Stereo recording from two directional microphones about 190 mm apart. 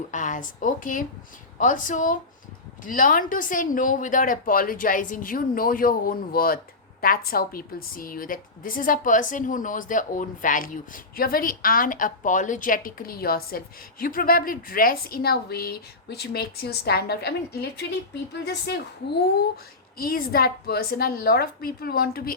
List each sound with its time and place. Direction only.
0.1 s a woman's voice: 40° left (ahead or behind); by 17.3 s 60° left (ahead or behind)
18.4 s a woman's voice: 60° left (ahead or behind)
20.0 s a woman's voice: 50° left (ahead or behind)